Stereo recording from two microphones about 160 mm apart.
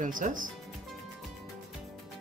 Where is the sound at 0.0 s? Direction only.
55° right (ahead or behind).